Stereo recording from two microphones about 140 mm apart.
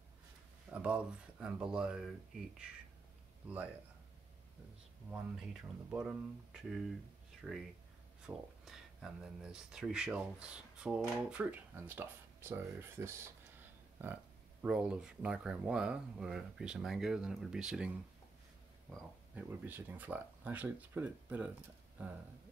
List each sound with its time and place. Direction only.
0.7 s speech: 10° right (ahead or behind)
3.4 s speech: 10° right (ahead or behind)
5.1 s speech: 5° right (ahead or behind)
19.3 s speech: 10° right (ahead or behind)